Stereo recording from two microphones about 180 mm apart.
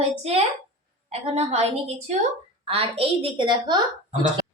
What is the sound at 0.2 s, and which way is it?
A woman's voice, 35° right (ahead or behind).